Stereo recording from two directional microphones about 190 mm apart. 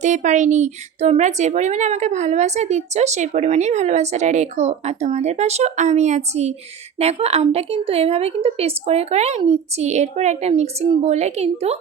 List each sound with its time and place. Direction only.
0.0 s a woman's voice: 40° right (ahead or behind)